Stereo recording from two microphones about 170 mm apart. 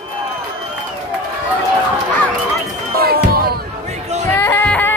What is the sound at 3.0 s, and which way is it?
Music, 65° right (ahead or behind).